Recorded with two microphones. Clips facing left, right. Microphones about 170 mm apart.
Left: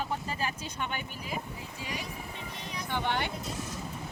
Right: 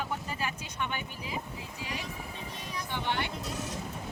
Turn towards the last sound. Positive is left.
turn(degrees=55)  # may be behind; listen again after turning